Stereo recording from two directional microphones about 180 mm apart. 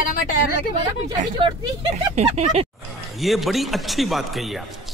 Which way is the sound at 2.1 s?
35° right (ahead or behind).